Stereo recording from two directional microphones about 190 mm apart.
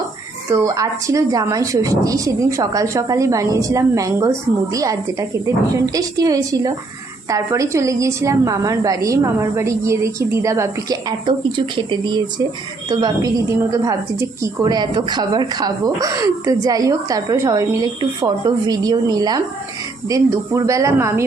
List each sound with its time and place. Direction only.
0.5 s a woman's voice: 15° right (ahead or behind)